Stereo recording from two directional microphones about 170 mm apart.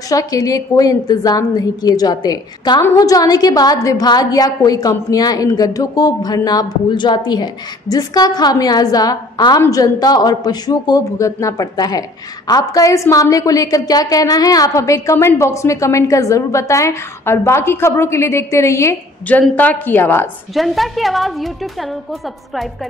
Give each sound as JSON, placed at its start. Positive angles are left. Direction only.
{"t": 0.1, "sound": "a woman's voice", "side_deg": 20}
{"t": 20.5, "sound": "a woman's voice", "side_deg": 0}